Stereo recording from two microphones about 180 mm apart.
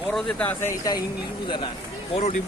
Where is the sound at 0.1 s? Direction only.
Centre (ahead or behind).